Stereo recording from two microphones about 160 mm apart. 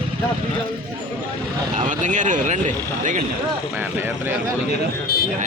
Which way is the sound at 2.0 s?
50° right (ahead or behind).